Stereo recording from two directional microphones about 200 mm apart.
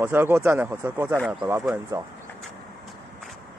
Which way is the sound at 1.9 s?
15° right (ahead or behind).